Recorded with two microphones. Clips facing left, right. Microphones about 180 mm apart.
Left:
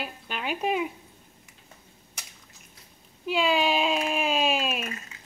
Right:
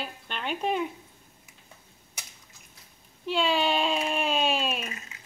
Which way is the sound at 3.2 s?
5° left (ahead or behind).